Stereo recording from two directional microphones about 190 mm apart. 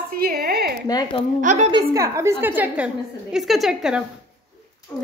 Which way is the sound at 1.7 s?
20° right (ahead or behind).